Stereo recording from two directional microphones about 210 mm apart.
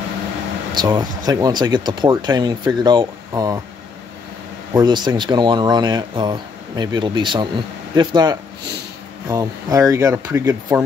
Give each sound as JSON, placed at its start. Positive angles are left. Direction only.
{"t": 0.7, "sound": "speech", "side_deg": -20}
{"t": 4.7, "sound": "speech", "side_deg": -20}